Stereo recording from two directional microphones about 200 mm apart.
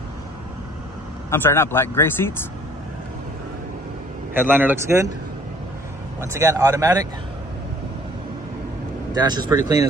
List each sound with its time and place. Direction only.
1.3 s speech: 10° left (ahead or behind)
4.4 s speech: 10° right (ahead or behind)
6.3 s speech: 15° right (ahead or behind)
9.1 s speech: 20° right (ahead or behind)